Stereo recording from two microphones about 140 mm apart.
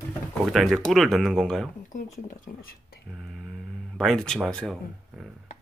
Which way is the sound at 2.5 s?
90° left.